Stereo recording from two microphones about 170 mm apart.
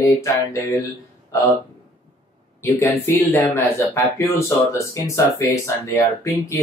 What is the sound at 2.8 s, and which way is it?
Speech, 20° left (ahead or behind).